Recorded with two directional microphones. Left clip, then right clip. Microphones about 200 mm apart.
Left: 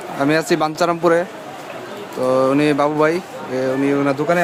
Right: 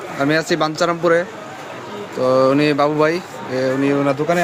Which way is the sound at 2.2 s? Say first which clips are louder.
Right 1 dB; 5° left (ahead or behind).